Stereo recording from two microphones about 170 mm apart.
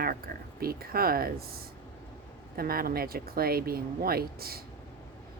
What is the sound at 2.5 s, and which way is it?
Speech, 60° right (ahead or behind).